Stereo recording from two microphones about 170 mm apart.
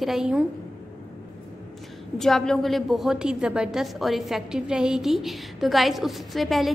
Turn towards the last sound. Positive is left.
turn(degrees=0)  # may be behind; listen again after turning